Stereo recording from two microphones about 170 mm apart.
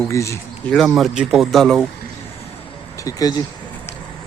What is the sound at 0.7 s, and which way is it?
A man's voice, centre (ahead or behind).